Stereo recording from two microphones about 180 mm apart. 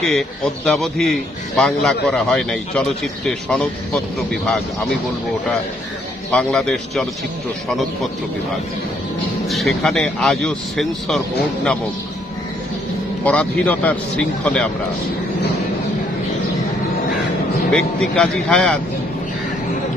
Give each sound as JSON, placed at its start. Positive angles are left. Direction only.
{"t": 0.7, "sound": "a man's voice", "side_deg": 0}
{"t": 6.3, "sound": "a man's voice", "side_deg": 5}
{"t": 9.5, "sound": "a man's voice", "side_deg": 0}
{"t": 13.2, "sound": "a man's voice", "side_deg": 10}
{"t": 17.6, "sound": "a man's voice", "side_deg": 5}